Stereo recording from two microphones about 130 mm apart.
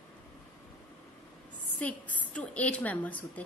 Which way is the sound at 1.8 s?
10° left (ahead or behind).